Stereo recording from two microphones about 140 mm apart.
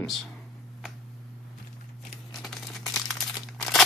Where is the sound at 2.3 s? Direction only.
Centre (ahead or behind).